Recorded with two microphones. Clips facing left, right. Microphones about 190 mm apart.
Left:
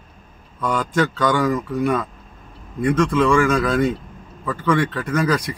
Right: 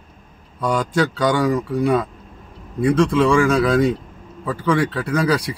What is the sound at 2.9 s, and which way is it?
Speech, 30° right (ahead or behind).